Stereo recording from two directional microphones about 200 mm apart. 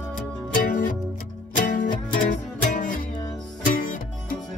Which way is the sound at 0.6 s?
40° left (ahead or behind).